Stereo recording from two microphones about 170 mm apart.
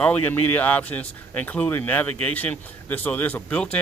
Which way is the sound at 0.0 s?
10° left (ahead or behind).